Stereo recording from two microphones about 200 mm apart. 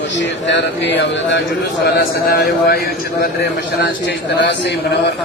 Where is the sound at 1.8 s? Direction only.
50° left (ahead or behind).